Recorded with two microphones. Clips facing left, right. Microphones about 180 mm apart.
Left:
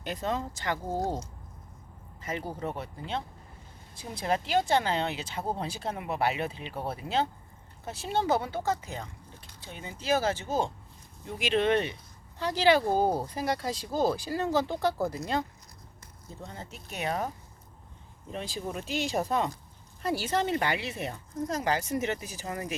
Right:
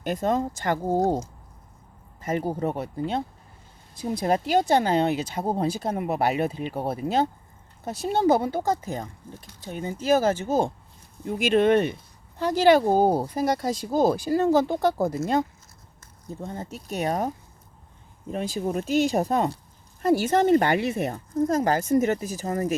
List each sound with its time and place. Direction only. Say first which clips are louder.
0.0 s speech: right 8 dB; 50° right (ahead or behind)
2.2 s speech: right 8 dB; 45° right (ahead or behind)
16.4 s speech: right 8 dB; 45° right (ahead or behind)